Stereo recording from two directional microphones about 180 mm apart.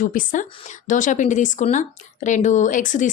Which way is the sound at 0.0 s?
50° left (ahead or behind).